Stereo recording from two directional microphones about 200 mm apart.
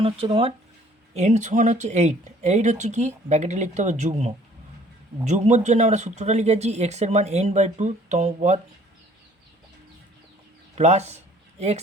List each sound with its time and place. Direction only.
0.0 s speech: 30° right (ahead or behind)
10.8 s speech: 35° right (ahead or behind)